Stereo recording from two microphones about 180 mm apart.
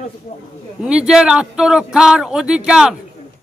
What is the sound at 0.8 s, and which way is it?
Speech, 5° right (ahead or behind).